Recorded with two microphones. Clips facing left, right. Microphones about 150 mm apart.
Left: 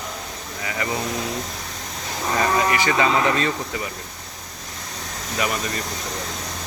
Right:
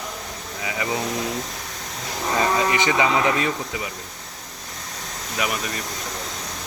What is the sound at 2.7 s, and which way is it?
Speech, 20° right (ahead or behind).